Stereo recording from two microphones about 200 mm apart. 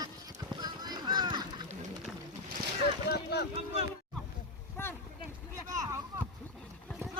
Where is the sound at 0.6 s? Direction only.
20° right (ahead or behind).